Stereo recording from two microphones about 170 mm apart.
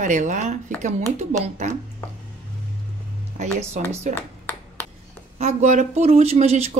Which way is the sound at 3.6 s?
40° right (ahead or behind).